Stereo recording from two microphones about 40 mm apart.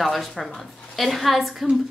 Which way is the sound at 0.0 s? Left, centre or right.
Centre.